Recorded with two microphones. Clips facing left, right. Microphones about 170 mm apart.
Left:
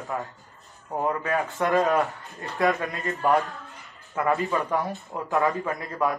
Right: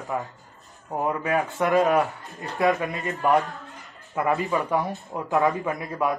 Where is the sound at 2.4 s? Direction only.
20° right (ahead or behind).